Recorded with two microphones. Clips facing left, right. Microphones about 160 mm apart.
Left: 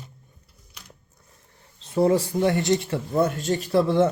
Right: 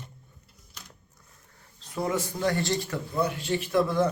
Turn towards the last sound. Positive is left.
turn(degrees=25)  # may be behind; listen again after turning